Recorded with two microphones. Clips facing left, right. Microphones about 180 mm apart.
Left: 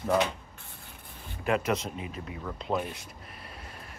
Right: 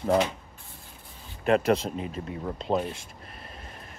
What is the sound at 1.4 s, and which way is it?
Speech, 30° right (ahead or behind).